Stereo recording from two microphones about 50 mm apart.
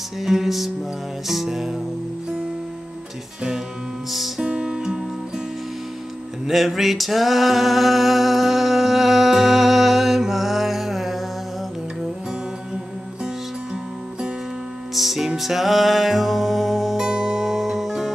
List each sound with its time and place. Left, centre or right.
0.2 s music: centre
4.4 s music: centre
6.4 s music: centre
15.0 s music: centre